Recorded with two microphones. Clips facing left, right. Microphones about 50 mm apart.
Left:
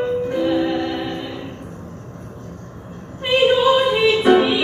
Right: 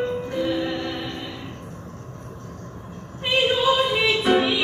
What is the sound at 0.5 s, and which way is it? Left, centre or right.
Music, left.